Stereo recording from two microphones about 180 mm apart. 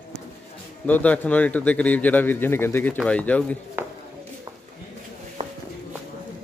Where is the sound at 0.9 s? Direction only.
10° left (ahead or behind).